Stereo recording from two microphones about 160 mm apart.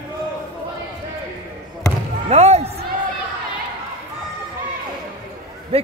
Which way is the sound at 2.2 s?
40° right (ahead or behind).